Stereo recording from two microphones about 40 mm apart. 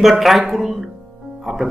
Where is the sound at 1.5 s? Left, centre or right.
Centre.